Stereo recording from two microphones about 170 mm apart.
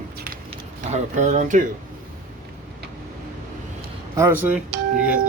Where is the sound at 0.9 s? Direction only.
45° right (ahead or behind).